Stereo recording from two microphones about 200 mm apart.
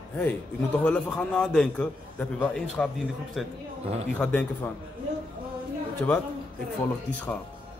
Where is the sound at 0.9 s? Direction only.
5° left (ahead or behind).